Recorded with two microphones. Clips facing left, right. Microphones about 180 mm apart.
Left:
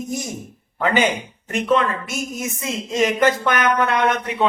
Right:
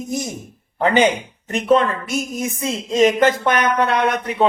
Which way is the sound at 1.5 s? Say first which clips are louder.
Right 3 dB; 35° right (ahead or behind).